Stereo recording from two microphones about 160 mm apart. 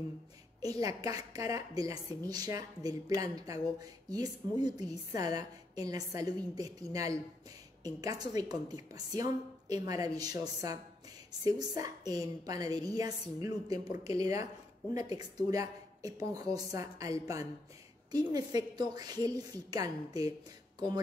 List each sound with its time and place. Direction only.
0.6 s speech: 25° right (ahead or behind)
11.4 s speech: 25° right (ahead or behind)